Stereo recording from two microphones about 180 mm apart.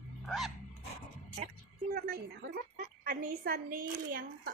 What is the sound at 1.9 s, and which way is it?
A woman's voice, 60° right (ahead or behind).